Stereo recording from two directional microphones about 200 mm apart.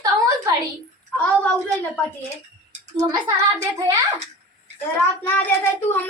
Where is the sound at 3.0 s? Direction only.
20° right (ahead or behind).